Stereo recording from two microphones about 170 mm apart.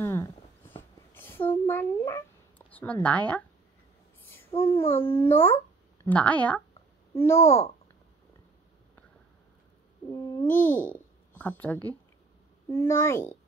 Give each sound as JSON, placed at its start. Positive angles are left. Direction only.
{"t": 0.0, "sound": "a sound", "side_deg": 15}
{"t": 1.7, "sound": "a child's voice", "side_deg": 15}
{"t": 4.6, "sound": "a child's voice", "side_deg": 15}
{"t": 10.1, "sound": "a child's voice", "side_deg": 10}